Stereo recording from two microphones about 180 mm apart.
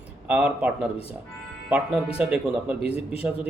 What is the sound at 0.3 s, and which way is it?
Speech, 5° right (ahead or behind).